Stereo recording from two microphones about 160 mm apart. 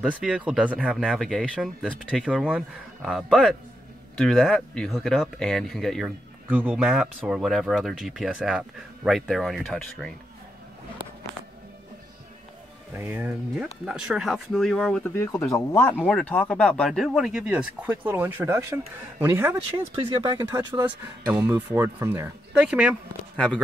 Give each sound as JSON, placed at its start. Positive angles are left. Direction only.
{"t": 0.0, "sound": "speech", "side_deg": -5}
{"t": 12.9, "sound": "speech", "side_deg": -15}
{"t": 15.1, "sound": "speech", "side_deg": 15}
{"t": 23.3, "sound": "speech", "side_deg": 5}